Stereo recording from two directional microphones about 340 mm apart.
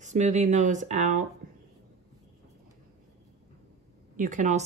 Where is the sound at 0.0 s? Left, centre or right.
Right.